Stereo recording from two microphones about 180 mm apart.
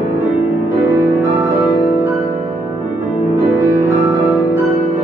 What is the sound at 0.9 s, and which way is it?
Music, 20° right (ahead or behind).